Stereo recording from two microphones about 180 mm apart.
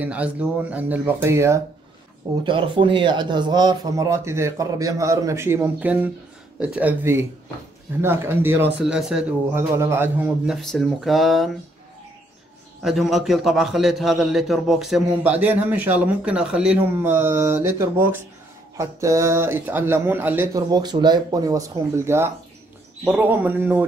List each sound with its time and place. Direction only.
0.0 s speech: 5° right (ahead or behind)
2.4 s speech: 25° right (ahead or behind); by 9.6 s 5° right (ahead or behind)
9.6 s a man's voice: 15° right (ahead or behind)
12.8 s a man's voice: centre (ahead or behind)